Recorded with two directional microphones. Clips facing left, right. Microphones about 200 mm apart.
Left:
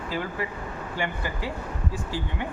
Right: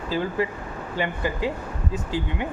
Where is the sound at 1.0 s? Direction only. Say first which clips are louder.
Right 5 dB; 20° right (ahead or behind).